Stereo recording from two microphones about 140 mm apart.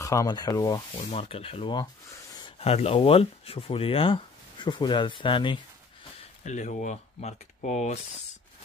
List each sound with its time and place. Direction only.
0.0 s speech: 25° left (ahead or behind)
1.1 s speech: 45° left (ahead or behind)
6.4 s speech: 60° left (ahead or behind)